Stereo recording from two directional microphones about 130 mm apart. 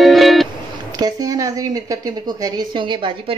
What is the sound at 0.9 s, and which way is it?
A woman's voice, 30° right (ahead or behind).